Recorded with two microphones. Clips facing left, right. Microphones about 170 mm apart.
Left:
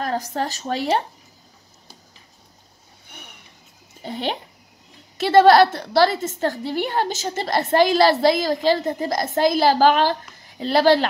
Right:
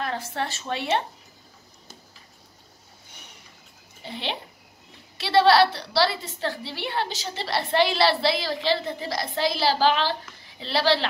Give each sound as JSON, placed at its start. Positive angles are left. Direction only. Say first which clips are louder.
{"t": 0.0, "sound": "speech", "louder": "left 5 dB", "side_deg": 40}
{"t": 3.1, "sound": "vehicle", "louder": "left 7 dB", "side_deg": 60}
{"t": 4.0, "sound": "a woman's voice", "louder": "left 6 dB", "side_deg": 45}